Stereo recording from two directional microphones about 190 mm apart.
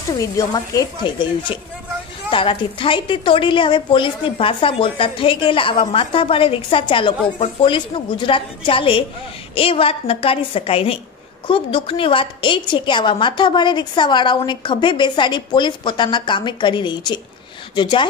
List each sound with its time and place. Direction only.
0.1 s a woman's voice: 20° left (ahead or behind)
2.3 s a woman's voice: 25° left (ahead or behind)